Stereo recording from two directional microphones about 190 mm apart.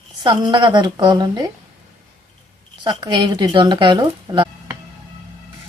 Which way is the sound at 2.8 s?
25° right (ahead or behind).